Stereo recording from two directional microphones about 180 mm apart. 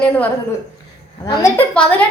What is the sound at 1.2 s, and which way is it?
Speech, 20° left (ahead or behind).